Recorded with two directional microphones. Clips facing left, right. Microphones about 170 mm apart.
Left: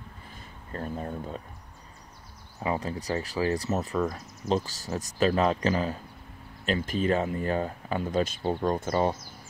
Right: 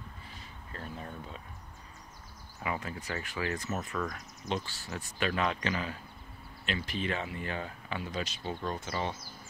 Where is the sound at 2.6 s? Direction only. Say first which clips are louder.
Left 6 dB; 35° left (ahead or behind).